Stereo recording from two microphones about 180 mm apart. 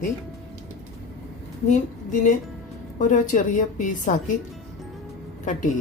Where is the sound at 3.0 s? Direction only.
45° left (ahead or behind).